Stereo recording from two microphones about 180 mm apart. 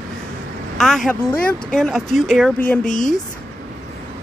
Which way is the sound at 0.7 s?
Centre (ahead or behind).